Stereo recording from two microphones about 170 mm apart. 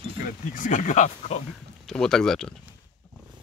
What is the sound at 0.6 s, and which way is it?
Speech, 45° left (ahead or behind).